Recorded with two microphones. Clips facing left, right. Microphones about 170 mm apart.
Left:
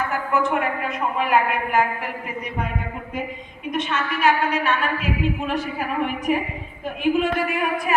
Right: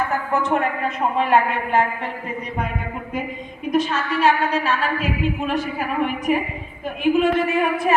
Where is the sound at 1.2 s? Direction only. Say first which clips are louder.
Right 1 dB; 25° right (ahead or behind).